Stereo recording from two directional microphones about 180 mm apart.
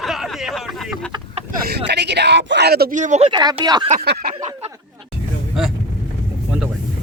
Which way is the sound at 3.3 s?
25° right (ahead or behind).